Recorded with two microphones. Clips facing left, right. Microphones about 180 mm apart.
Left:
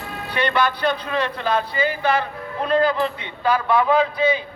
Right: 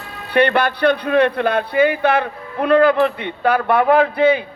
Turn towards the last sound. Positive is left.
turn(degrees=-60)  # may be behind; listen again after turning